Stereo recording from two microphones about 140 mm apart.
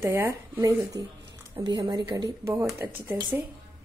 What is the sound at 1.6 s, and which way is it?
Speech, 30° right (ahead or behind).